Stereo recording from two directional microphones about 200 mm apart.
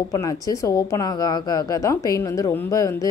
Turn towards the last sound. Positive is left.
turn(degrees=15)  # may be behind; listen again after turning